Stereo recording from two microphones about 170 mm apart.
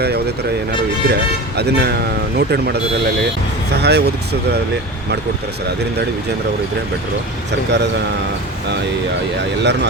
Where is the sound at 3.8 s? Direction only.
75° right (ahead or behind).